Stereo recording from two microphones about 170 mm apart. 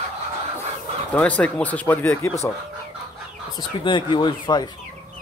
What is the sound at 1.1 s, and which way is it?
Speech, 10° left (ahead or behind).